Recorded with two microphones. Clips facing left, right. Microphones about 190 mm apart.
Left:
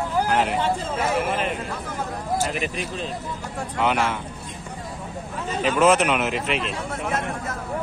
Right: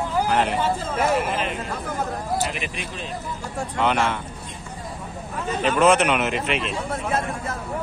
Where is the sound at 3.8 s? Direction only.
5° left (ahead or behind).